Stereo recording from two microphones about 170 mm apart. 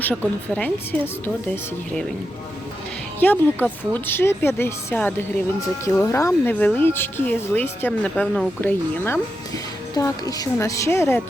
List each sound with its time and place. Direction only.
0.0 s speech: 10° left (ahead or behind)
3.2 s speech: 10° left (ahead or behind)